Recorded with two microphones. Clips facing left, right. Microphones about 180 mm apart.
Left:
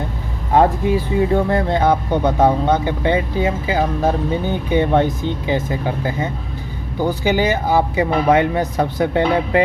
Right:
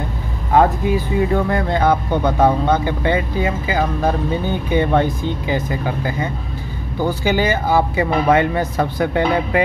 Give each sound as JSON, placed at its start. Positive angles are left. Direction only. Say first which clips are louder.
{"t": 0.5, "sound": "speech", "louder": "even", "side_deg": 30}